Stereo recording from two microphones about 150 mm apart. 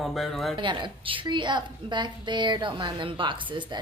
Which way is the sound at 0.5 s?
35° right (ahead or behind).